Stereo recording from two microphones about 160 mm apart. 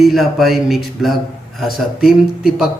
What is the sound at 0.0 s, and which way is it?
Speech, centre (ahead or behind).